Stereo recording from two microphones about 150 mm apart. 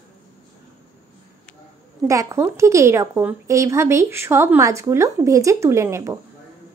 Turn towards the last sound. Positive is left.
turn(degrees=-20)  # may be behind; listen again after turning